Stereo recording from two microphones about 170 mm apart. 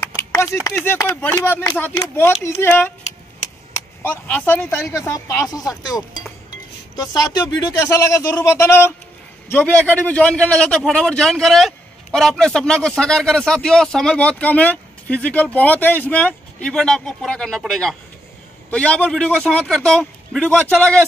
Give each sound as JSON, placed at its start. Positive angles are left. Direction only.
{"t": 0.1, "sound": "a sound", "side_deg": 15}
{"t": 0.7, "sound": "speech", "side_deg": 15}
{"t": 4.0, "sound": "a woman's voice", "side_deg": 10}